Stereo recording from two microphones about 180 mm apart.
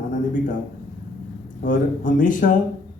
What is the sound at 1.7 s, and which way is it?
Speech, 45° left (ahead or behind).